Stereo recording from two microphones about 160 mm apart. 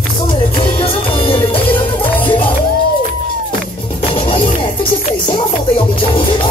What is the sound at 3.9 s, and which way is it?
Music, 35° left (ahead or behind).